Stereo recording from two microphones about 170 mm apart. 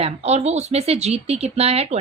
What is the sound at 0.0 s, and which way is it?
A woman's voice, 40° right (ahead or behind).